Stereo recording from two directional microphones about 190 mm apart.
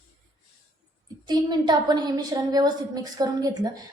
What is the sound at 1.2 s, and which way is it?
A woman's voice, 20° right (ahead or behind).